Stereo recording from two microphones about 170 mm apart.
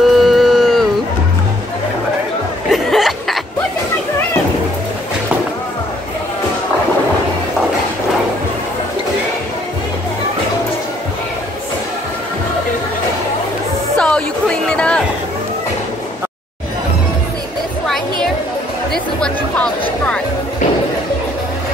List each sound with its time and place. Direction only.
0.0 s a sound: centre (ahead or behind)
2.7 s snicker: centre (ahead or behind)
13.9 s music: 5° left (ahead or behind)
17.8 s music: centre (ahead or behind)